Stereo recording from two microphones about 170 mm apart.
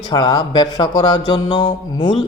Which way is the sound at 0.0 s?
25° left (ahead or behind).